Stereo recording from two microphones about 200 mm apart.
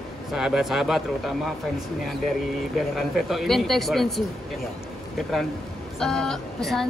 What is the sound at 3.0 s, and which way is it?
A woman's voice, centre (ahead or behind).